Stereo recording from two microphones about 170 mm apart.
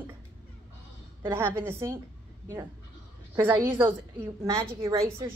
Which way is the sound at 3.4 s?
15° right (ahead or behind).